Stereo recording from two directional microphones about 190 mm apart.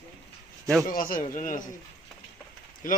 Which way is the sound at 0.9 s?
45° left (ahead or behind).